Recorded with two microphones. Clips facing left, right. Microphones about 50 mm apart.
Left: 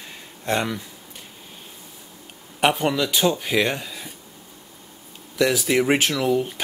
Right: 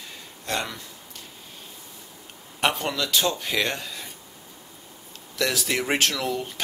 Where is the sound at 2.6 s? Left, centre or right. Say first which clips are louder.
Left 5 dB; centre.